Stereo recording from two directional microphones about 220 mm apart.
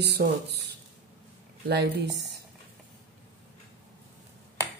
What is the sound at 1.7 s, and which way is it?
Speech, 50° right (ahead or behind).